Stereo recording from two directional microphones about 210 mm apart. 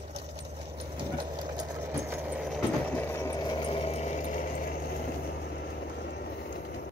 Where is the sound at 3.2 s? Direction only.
15° left (ahead or behind); by 4.5 s 35° left (ahead or behind).